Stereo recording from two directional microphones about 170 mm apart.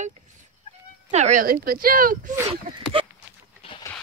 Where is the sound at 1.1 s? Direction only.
45° right (ahead or behind).